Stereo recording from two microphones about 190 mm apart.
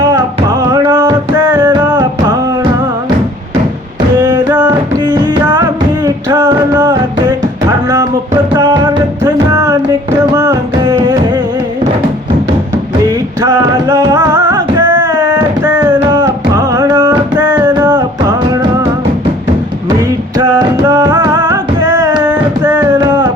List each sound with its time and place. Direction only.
0.0 s music: 15° right (ahead or behind)
4.4 s music: 10° right (ahead or behind)
5.1 s music: 20° right (ahead or behind)
8.5 s music: 20° right (ahead or behind)
13.1 s music: 20° right (ahead or behind)
17.3 s music: 10° right (ahead or behind)
20.3 s music: 20° right (ahead or behind)
23.0 s music: 25° right (ahead or behind)